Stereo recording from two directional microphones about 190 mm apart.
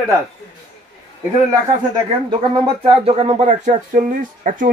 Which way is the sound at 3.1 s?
35° right (ahead or behind).